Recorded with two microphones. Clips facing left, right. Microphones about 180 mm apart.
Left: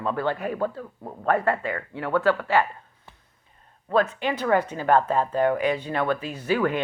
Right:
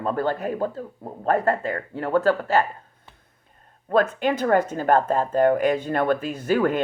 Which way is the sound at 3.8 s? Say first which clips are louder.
Right 3 dB; 50° right (ahead or behind).